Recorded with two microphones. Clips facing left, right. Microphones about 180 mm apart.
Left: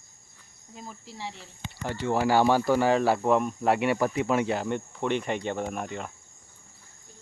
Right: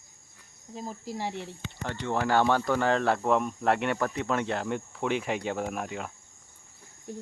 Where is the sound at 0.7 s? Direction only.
35° right (ahead or behind); by 1.5 s 55° right (ahead or behind).